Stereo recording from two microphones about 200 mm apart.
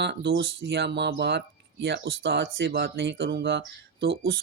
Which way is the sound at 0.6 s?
60° right (ahead or behind).